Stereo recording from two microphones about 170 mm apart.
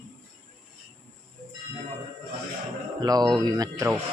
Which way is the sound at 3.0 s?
25° right (ahead or behind).